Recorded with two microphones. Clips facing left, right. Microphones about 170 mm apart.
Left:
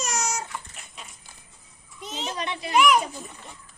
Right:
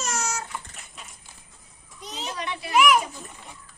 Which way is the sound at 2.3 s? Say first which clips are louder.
Left 1 dB; 20° left (ahead or behind).